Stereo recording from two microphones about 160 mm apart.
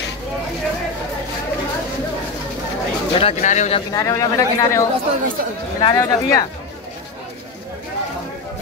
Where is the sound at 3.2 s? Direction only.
50° left (ahead or behind).